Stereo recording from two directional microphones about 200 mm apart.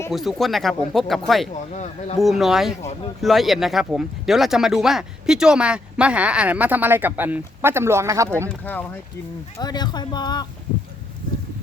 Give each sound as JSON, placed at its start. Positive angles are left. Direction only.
{"t": 0.1, "sound": "speech", "side_deg": 0}
{"t": 1.7, "sound": "speech", "side_deg": 35}
{"t": 2.1, "sound": "speech", "side_deg": 0}
{"t": 8.6, "sound": "speech", "side_deg": 10}
{"t": 9.6, "sound": "speech", "side_deg": 20}